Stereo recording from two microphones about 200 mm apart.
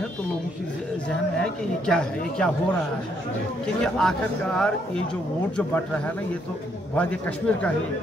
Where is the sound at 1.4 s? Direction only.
5° left (ahead or behind).